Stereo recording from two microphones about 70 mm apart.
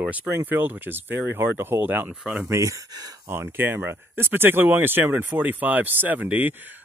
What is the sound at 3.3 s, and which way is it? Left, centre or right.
Speech, right.